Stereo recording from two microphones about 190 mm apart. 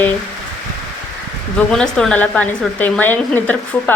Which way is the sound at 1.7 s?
5° left (ahead or behind).